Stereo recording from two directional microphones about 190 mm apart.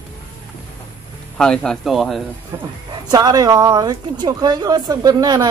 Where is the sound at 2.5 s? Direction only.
20° right (ahead or behind).